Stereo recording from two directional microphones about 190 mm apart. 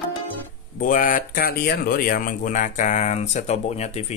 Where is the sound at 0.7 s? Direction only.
45° left (ahead or behind).